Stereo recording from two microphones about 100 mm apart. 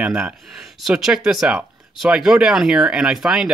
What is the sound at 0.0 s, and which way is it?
Speech, 10° right (ahead or behind).